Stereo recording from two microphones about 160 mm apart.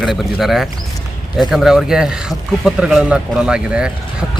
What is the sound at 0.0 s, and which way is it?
Speech, centre (ahead or behind).